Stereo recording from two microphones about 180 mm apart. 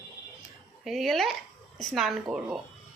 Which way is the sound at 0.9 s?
Centre (ahead or behind).